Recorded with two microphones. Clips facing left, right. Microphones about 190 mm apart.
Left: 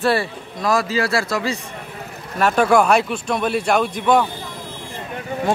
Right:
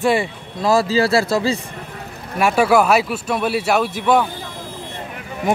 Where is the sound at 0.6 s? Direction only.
25° right (ahead or behind).